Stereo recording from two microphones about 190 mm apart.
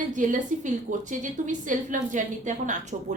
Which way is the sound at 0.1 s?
40° right (ahead or behind).